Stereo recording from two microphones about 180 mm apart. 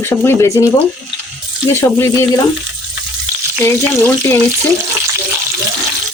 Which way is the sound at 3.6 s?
10° left (ahead or behind).